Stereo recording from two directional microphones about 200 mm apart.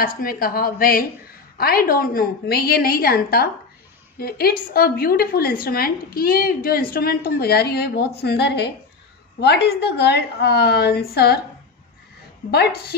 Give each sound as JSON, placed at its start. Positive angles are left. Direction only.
{"t": 0.0, "sound": "a woman's voice", "side_deg": 45}
{"t": 12.4, "sound": "a woman's voice", "side_deg": 55}